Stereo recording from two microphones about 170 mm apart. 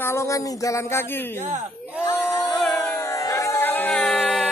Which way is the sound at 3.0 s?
20° left (ahead or behind).